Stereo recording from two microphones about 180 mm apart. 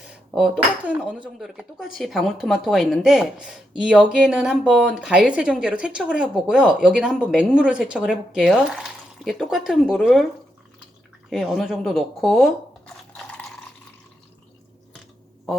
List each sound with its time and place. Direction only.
0.0 s speech: 5° right (ahead or behind)
11.3 s speech: centre (ahead or behind)
13.1 s water: 5° left (ahead or behind)